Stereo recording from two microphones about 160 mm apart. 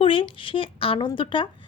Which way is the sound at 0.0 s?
35° left (ahead or behind).